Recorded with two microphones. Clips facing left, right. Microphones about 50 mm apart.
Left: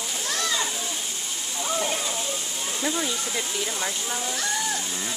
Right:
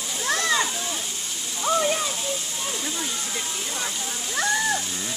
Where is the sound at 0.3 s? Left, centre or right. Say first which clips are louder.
Right 5 dB; right.